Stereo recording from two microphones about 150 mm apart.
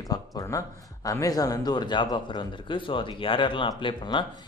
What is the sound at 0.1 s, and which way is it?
A man's voice, 25° left (ahead or behind).